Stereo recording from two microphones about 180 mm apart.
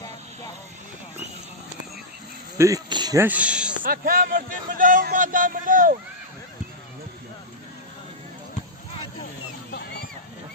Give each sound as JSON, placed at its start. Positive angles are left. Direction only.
{"t": 2.6, "sound": "speech", "side_deg": -20}
{"t": 3.2, "sound": "speech", "side_deg": -5}
{"t": 3.8, "sound": "a man's voice", "side_deg": -50}
{"t": 9.7, "sound": "a sound", "side_deg": 65}